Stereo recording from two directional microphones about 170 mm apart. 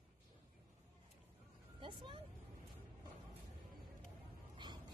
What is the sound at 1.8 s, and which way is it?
Vehicle, 30° right (ahead or behind).